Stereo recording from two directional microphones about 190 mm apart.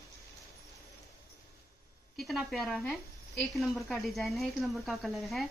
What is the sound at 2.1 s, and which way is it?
Speech, centre (ahead or behind).